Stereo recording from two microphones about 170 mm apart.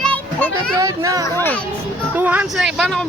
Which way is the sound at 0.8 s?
20° right (ahead or behind).